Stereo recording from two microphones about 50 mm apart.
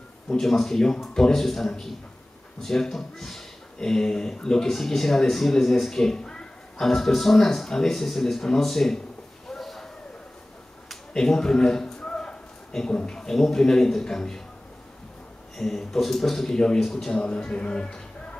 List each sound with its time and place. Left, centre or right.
0.3 s speech: centre
9.5 s a sound: centre
10.9 s a man's voice: centre
15.5 s speech: centre